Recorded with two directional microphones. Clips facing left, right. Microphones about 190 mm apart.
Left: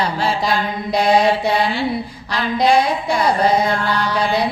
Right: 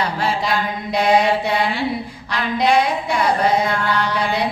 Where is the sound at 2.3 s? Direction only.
35° left (ahead or behind).